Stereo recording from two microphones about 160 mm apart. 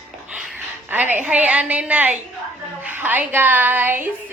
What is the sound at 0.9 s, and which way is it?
A woman's voice, 10° right (ahead or behind).